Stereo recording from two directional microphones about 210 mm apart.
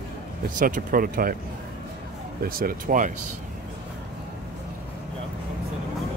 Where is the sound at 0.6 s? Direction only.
40° right (ahead or behind).